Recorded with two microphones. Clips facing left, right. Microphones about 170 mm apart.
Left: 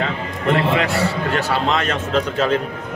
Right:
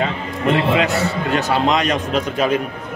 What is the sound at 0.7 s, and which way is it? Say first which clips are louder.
A man's voice: right 1 dB; 20° right (ahead or behind).